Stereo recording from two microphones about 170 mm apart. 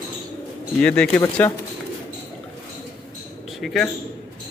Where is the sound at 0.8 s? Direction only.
5° left (ahead or behind).